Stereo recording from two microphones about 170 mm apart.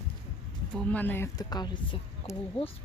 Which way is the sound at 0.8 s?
10° left (ahead or behind).